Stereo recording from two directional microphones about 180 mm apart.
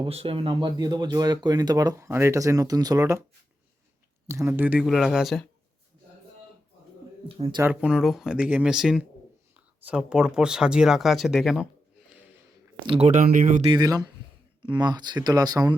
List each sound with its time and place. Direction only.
0.0 s speech: 30° right (ahead or behind)
4.3 s speech: 15° right (ahead or behind)
7.3 s speech: 30° right (ahead or behind)
7.6 s speech: 5° right (ahead or behind)
12.8 s speech: 25° right (ahead or behind)
13.1 s speech: 45° right (ahead or behind)
13.6 s speech: 30° right (ahead or behind)